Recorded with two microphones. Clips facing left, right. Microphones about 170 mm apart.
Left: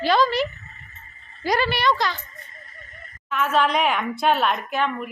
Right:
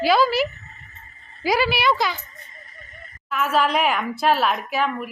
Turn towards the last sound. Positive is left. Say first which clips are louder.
# right 1 dB
turn(degrees=-5)  # may be behind; listen again after turning